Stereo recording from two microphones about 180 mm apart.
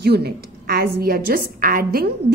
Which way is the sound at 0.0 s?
65° right (ahead or behind).